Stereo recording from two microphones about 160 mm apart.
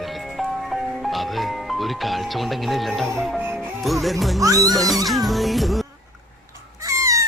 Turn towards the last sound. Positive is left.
turn(degrees=-20)  # may be behind; listen again after turning